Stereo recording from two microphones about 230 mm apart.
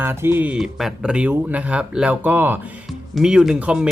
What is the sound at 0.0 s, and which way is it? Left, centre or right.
Speech, centre.